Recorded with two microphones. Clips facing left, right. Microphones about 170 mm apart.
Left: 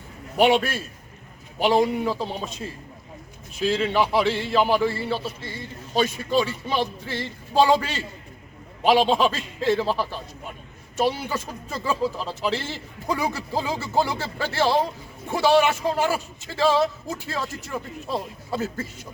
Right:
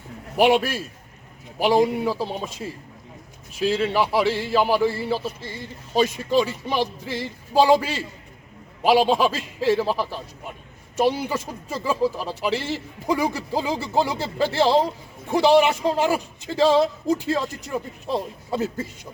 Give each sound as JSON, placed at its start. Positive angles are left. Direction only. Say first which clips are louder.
{"t": 0.3, "sound": "speech", "louder": "right 1 dB", "side_deg": -5}
{"t": 3.6, "sound": "a man's voice", "louder": "right 1 dB", "side_deg": -5}